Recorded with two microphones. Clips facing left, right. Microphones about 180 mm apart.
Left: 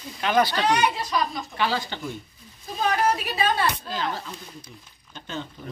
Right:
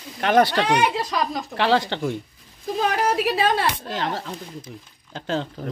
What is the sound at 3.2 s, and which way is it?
Speech, 90° right.